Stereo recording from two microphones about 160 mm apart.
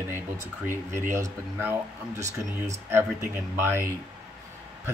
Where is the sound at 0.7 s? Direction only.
15° right (ahead or behind).